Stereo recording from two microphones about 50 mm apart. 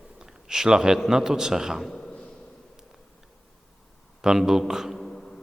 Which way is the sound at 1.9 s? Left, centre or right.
Centre.